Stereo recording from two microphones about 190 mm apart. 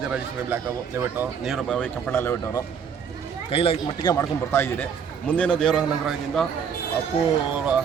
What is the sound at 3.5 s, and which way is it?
Speech, 30° left (ahead or behind).